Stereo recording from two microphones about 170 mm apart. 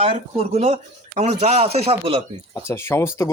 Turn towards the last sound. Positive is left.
turn(degrees=15)  # may be behind; listen again after turning